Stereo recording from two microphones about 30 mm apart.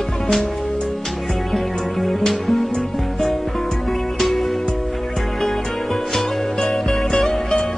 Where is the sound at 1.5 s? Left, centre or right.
Centre.